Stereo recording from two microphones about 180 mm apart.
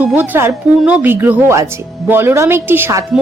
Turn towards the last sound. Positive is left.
turn(degrees=-15)  # may be behind; listen again after turning